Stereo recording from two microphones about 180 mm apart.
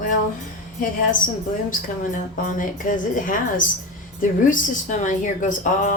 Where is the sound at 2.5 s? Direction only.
45° left (ahead or behind).